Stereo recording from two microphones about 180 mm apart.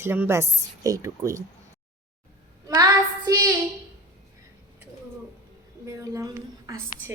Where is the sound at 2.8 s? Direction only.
20° right (ahead or behind).